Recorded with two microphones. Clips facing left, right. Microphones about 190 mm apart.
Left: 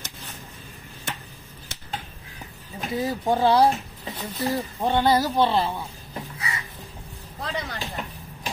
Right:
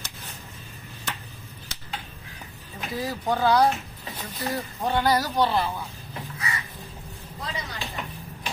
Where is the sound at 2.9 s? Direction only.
25° left (ahead or behind).